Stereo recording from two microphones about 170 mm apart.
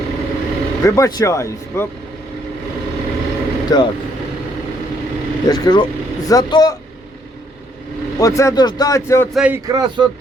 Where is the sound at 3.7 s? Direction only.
25° left (ahead or behind).